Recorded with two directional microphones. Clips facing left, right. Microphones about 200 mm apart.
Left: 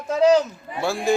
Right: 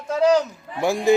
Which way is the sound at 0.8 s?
15° right (ahead or behind).